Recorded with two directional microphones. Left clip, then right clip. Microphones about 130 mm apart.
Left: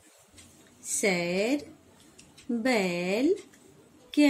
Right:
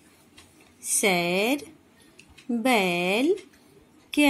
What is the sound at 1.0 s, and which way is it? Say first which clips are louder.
A woman's voice: right 4 dB; 40° right (ahead or behind).